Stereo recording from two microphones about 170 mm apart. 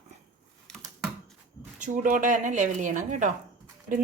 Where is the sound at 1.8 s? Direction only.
50° right (ahead or behind).